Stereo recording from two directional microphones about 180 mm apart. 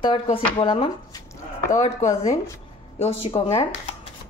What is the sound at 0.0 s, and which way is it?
Speech, 30° left (ahead or behind).